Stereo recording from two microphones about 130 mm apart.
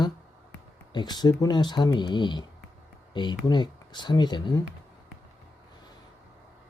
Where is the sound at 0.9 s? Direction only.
35° left (ahead or behind).